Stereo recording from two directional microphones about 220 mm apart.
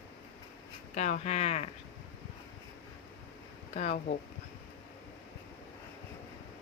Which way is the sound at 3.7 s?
35° left (ahead or behind).